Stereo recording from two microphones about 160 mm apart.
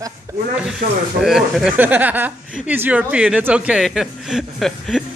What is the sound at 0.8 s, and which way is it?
Speech, 60° right (ahead or behind).